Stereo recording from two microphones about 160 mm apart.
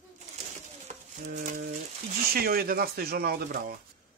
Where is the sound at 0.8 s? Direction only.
50° right (ahead or behind).